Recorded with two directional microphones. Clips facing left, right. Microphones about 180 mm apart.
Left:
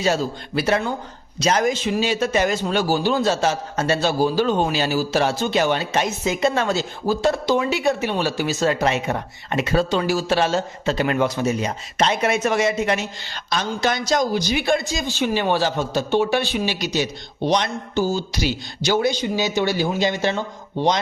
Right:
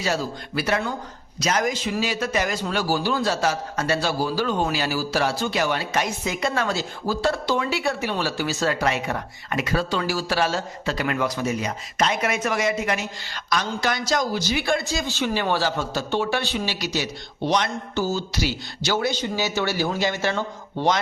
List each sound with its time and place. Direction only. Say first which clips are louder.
0.0 s a man's voice: left 4 dB; 25° left (ahead or behind)